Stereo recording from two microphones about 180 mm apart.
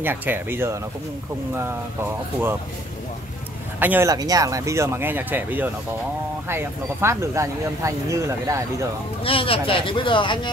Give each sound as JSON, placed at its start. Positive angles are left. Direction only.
{"t": 0.0, "sound": "speech", "side_deg": -10}
{"t": 3.8, "sound": "speech", "side_deg": -10}
{"t": 9.2, "sound": "speech", "side_deg": 30}